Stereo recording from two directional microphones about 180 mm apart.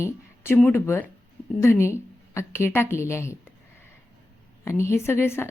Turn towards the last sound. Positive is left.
turn(degrees=15)  # may be behind; listen again after turning